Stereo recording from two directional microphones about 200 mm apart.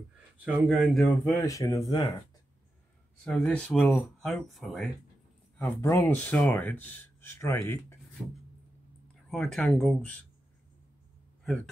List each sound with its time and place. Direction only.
0.5 s speech: centre (ahead or behind)
1.4 s speech: 15° left (ahead or behind)
3.3 s speech: 5° left (ahead or behind)
5.8 s speech: 10° left (ahead or behind)
9.3 s speech: 5° left (ahead or behind)
11.4 s speech: centre (ahead or behind)